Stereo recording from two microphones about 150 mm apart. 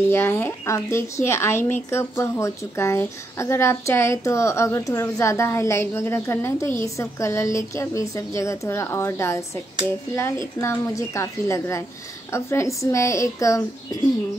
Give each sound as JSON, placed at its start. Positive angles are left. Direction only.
{"t": 0.1, "sound": "a woman's voice", "side_deg": 15}
{"t": 10.6, "sound": "speech", "side_deg": 20}